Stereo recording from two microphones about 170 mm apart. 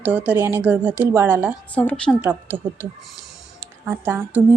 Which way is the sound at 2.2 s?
15° right (ahead or behind).